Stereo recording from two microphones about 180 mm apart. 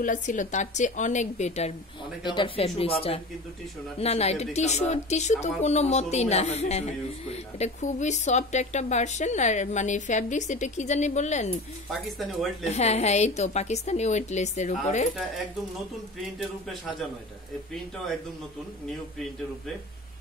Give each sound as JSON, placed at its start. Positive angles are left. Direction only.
{"t": 0.0, "sound": "a woman's voice", "side_deg": 45}
{"t": 2.2, "sound": "speech", "side_deg": 25}
{"t": 11.9, "sound": "speech", "side_deg": 0}
{"t": 12.6, "sound": "speech", "side_deg": 40}
{"t": 16.3, "sound": "speech", "side_deg": 0}